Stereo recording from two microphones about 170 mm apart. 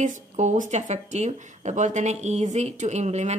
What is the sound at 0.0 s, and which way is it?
Speech, 45° right (ahead or behind).